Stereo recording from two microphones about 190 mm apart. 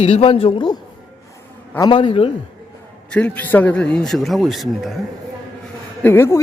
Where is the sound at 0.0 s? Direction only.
30° left (ahead or behind).